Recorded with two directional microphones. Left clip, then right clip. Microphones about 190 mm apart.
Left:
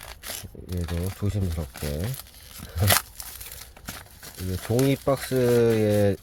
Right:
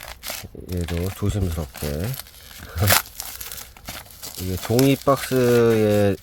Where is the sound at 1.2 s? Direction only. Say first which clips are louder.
Right 5 dB; 30° right (ahead or behind).